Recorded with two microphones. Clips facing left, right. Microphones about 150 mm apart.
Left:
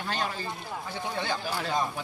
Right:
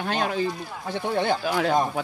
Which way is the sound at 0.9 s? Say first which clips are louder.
Right 9 dB; 55° right (ahead or behind).